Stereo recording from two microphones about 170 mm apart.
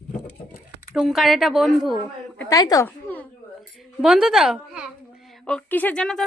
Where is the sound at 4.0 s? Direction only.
Centre (ahead or behind).